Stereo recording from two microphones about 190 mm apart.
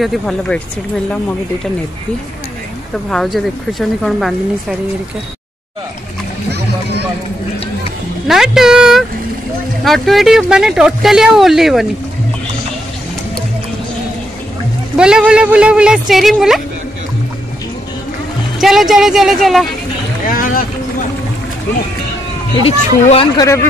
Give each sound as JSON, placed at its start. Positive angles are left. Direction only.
{"t": 0.0, "sound": "speech", "side_deg": 0}
{"t": 3.1, "sound": "speech", "side_deg": 0}
{"t": 8.3, "sound": "speech", "side_deg": 0}
{"t": 15.0, "sound": "speech", "side_deg": -5}
{"t": 18.6, "sound": "speech", "side_deg": 0}
{"t": 20.2, "sound": "boat", "side_deg": 50}
{"t": 22.7, "sound": "speech", "side_deg": 30}